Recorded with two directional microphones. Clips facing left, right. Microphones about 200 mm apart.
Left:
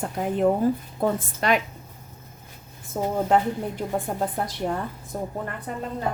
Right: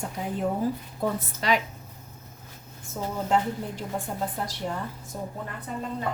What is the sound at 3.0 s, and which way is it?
A woman's voice, 60° left (ahead or behind).